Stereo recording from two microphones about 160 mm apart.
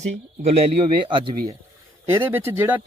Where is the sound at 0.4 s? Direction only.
30° right (ahead or behind).